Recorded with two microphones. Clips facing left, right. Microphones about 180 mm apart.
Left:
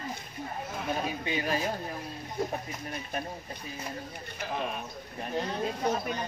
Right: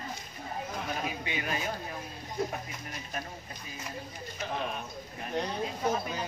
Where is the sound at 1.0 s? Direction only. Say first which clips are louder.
Left 4 dB; 30° left (ahead or behind).